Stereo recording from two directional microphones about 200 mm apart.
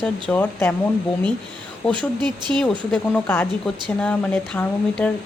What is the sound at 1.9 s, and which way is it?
Speech, 20° right (ahead or behind).